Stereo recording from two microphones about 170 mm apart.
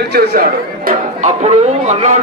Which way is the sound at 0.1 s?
70° right (ahead or behind).